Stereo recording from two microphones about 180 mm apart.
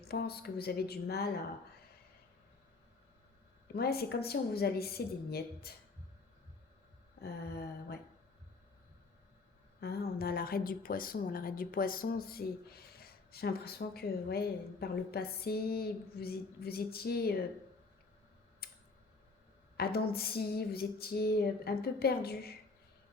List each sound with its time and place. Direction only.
0.0 s a woman's voice: 60° left (ahead or behind)
3.8 s a woman's voice: 60° left (ahead or behind)
9.8 s a woman's voice: 60° left (ahead or behind)
18.6 s tick: 60° left (ahead or behind)
19.7 s a woman's voice: 60° left (ahead or behind)